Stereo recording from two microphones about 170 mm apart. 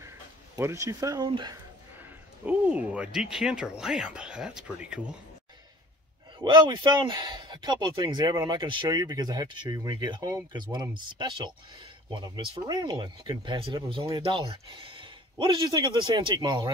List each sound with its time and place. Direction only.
0.6 s speech: 15° right (ahead or behind)
2.4 s speech: 10° right (ahead or behind)
6.4 s speech: 30° right (ahead or behind)